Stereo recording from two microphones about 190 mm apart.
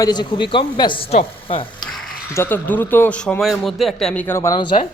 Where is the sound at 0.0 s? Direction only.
20° left (ahead or behind).